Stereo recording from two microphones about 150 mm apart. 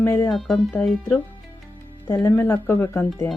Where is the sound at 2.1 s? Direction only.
20° left (ahead or behind).